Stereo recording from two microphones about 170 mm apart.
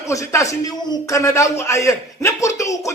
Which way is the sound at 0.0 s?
20° left (ahead or behind).